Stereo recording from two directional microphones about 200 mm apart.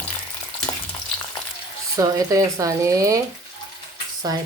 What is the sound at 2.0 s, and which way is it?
Speech, 15° right (ahead or behind).